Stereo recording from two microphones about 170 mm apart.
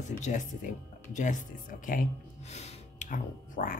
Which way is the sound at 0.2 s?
45° left (ahead or behind).